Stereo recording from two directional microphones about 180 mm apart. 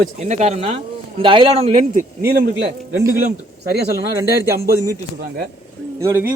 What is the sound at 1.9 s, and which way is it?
Speech, 55° right (ahead or behind).